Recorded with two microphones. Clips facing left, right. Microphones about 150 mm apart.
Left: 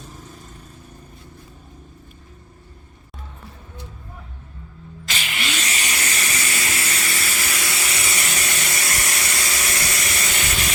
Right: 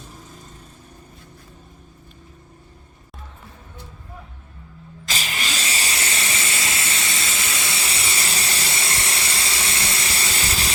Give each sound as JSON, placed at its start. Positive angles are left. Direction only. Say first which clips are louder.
{"t": 5.0, "sound": "vehicle", "louder": "even", "side_deg": -35}